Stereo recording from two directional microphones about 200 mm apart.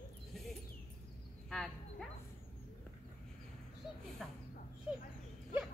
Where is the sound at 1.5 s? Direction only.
Centre (ahead or behind).